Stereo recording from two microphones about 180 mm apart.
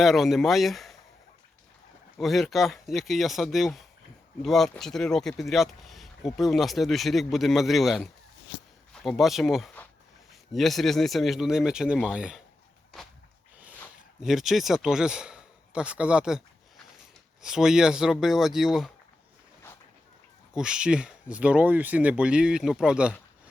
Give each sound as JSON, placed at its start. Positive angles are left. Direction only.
{"t": 0.0, "sound": "speech", "side_deg": 0}
{"t": 2.1, "sound": "speech", "side_deg": 0}
{"t": 14.2, "sound": "speech", "side_deg": 0}
{"t": 20.5, "sound": "speech", "side_deg": -5}